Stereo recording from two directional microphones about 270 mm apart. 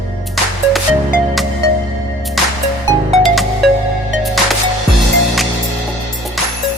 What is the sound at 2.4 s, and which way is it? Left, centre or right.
Music, centre.